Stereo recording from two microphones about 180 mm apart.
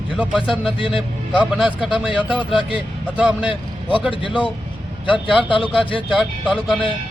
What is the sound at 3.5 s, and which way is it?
Speech, 30° left (ahead or behind).